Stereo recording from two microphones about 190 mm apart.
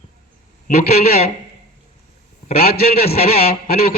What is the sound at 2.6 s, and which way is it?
A man's voice, 55° left (ahead or behind).